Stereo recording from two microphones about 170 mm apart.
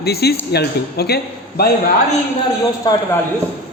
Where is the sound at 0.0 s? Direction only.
70° left (ahead or behind).